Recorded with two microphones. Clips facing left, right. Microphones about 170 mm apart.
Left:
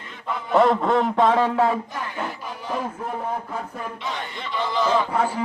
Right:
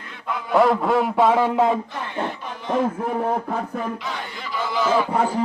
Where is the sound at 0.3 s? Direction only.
Centre (ahead or behind); by 1.8 s 15° right (ahead or behind).